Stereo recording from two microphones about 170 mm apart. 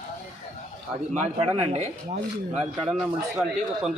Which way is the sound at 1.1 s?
40° right (ahead or behind).